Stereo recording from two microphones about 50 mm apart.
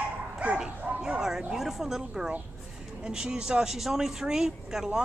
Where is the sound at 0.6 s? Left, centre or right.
Centre.